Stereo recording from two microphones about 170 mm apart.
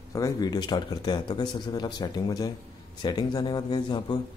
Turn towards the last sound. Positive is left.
turn(degrees=25)  # may be behind; listen again after turning